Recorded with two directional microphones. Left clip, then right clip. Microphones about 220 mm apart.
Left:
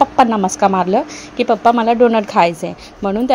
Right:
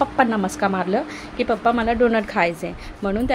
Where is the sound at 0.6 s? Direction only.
30° left (ahead or behind).